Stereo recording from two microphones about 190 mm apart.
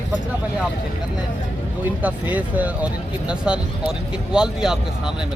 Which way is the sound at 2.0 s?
10° right (ahead or behind).